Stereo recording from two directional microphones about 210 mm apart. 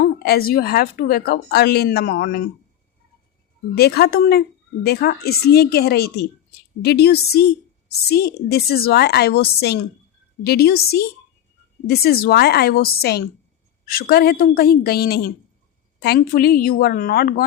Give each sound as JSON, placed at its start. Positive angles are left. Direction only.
{"t": 0.0, "sound": "a woman's voice", "side_deg": 45}
{"t": 3.8, "sound": "a woman's voice", "side_deg": 50}